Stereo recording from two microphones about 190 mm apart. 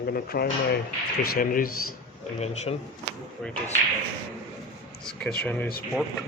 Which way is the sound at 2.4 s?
35° left (ahead or behind).